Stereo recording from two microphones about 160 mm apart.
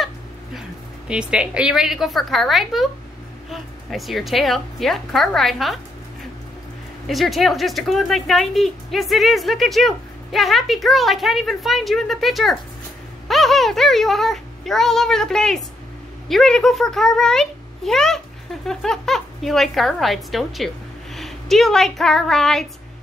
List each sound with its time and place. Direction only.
0.6 s speech: 5° right (ahead or behind)
7.1 s speech: centre (ahead or behind)